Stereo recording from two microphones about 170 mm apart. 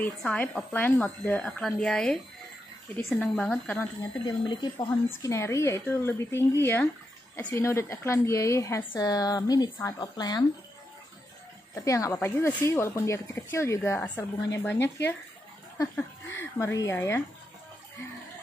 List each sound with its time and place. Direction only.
0.0 s a woman's voice: 10° left (ahead or behind)
3.2 s a woman's voice: 5° left (ahead or behind)
4.3 s a woman's voice: 25° left (ahead or behind)
11.7 s a woman's voice: 20° left (ahead or behind)